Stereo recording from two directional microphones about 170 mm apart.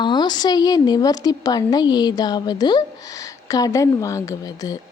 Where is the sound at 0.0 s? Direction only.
25° left (ahead or behind).